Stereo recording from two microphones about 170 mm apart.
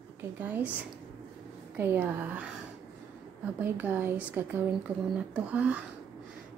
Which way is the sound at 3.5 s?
10° right (ahead or behind).